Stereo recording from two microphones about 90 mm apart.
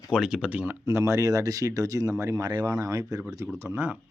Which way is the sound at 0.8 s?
40° right (ahead or behind).